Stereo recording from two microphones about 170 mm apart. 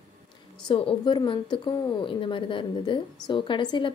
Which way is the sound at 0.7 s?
30° left (ahead or behind).